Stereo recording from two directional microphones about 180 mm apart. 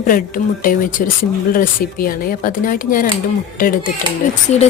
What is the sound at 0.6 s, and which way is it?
Speech, 50° left (ahead or behind).